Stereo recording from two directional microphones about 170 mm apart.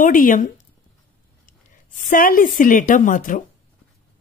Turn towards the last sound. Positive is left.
turn(degrees=50)  # may be behind; listen again after turning